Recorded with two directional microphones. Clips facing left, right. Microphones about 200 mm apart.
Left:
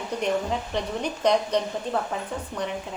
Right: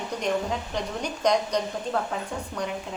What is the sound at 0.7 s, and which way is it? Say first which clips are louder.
Speech: left 2 dB; 5° left (ahead or behind).